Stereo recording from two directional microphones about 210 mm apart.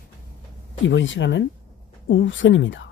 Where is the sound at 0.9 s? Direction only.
60° left (ahead or behind).